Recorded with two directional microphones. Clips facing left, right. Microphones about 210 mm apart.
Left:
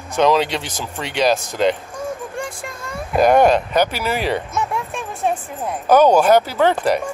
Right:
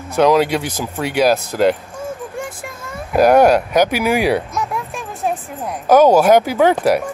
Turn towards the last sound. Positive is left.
turn(degrees=-10)  # may be behind; listen again after turning